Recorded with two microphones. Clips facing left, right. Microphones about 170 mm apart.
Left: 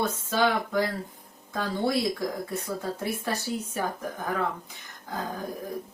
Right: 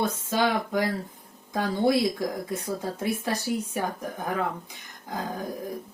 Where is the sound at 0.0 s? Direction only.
20° right (ahead or behind).